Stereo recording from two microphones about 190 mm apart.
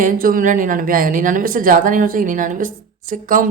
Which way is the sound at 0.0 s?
45° right (ahead or behind).